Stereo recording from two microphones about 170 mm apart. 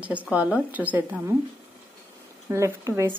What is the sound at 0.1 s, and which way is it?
A woman's voice, 10° right (ahead or behind).